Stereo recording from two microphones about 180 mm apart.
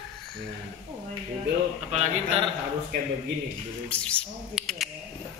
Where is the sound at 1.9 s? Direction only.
35° right (ahead or behind).